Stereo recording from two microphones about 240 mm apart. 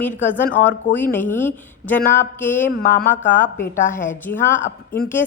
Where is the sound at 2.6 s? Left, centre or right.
Left.